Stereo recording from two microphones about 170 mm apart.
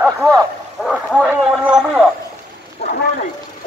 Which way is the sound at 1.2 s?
5° right (ahead or behind).